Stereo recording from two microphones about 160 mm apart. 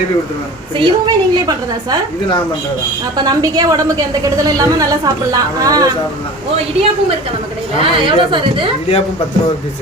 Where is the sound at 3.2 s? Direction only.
25° right (ahead or behind).